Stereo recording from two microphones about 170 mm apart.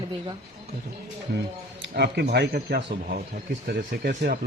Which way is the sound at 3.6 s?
60° right (ahead or behind).